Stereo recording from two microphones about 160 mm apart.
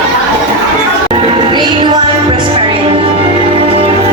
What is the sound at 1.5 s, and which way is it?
Music, 25° right (ahead or behind).